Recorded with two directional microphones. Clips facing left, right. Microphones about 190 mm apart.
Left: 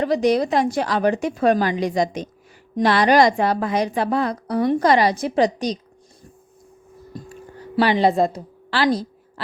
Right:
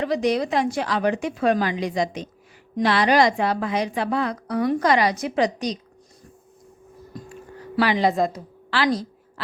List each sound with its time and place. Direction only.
0.0 s a woman's voice: 40° left (ahead or behind)
7.8 s a woman's voice: 30° left (ahead or behind)